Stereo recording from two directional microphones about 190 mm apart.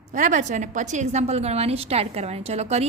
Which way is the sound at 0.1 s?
40° right (ahead or behind).